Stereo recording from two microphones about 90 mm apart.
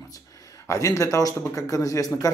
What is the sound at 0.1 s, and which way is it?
Speech, 40° left (ahead or behind).